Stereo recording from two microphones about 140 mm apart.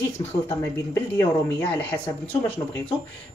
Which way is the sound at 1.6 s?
10° left (ahead or behind).